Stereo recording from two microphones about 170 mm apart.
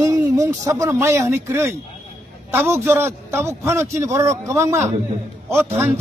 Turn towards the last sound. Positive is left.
turn(degrees=-15)  # may be behind; listen again after turning